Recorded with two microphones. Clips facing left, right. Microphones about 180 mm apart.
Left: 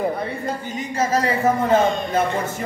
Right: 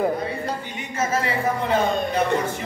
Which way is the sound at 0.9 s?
40° left (ahead or behind).